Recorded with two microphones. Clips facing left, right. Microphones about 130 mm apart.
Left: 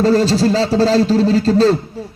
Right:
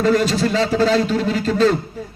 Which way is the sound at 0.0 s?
35° left (ahead or behind).